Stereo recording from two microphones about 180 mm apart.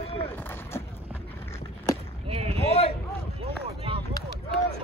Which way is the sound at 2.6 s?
35° left (ahead or behind).